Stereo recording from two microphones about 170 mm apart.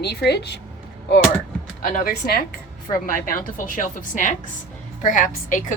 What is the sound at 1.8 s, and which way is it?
A woman's voice, 55° left (ahead or behind).